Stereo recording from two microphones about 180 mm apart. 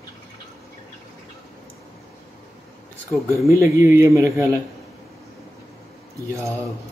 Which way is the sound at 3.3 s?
15° right (ahead or behind).